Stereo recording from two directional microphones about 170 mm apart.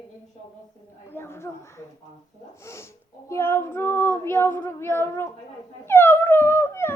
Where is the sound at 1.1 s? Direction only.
15° left (ahead or behind).